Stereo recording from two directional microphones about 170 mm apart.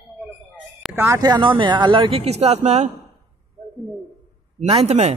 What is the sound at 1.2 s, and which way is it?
A man's voice, 25° right (ahead or behind).